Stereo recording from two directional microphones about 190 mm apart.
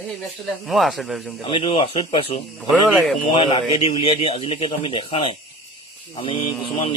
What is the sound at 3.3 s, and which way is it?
Speech, 25° left (ahead or behind).